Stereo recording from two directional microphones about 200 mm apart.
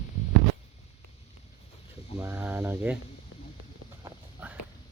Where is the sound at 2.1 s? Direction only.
10° right (ahead or behind).